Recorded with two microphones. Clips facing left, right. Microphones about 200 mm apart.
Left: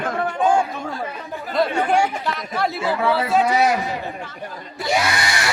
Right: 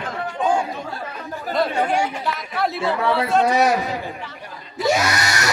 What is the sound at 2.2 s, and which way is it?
A man's voice, centre (ahead or behind).